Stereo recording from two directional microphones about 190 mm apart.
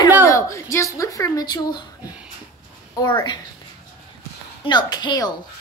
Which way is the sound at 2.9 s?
25° left (ahead or behind).